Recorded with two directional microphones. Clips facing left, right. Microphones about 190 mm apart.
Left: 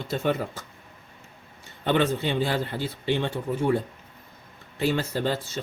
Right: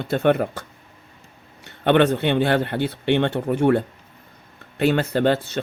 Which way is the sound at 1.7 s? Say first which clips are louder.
Right 6 dB; 65° right (ahead or behind).